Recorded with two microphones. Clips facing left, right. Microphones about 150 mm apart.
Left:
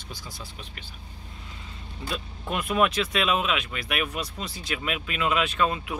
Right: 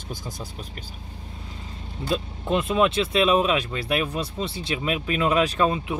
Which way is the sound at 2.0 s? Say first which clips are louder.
Right 7 dB; 25° right (ahead or behind).